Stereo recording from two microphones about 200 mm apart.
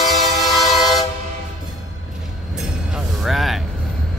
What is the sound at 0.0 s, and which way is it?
Train, centre (ahead or behind).